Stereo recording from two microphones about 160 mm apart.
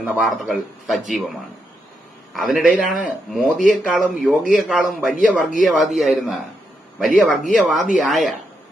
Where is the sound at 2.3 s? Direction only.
Centre (ahead or behind).